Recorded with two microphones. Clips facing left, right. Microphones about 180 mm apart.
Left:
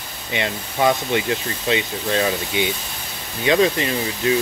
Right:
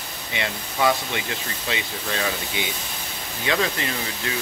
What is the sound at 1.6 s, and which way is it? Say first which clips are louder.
Speech: left 8 dB; 20° left (ahead or behind).